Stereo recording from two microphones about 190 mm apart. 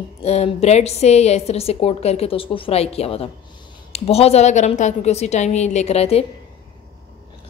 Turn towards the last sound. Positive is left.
turn(degrees=35)  # may be behind; listen again after turning